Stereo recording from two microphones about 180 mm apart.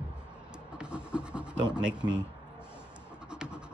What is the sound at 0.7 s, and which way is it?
Scratch, 5° right (ahead or behind).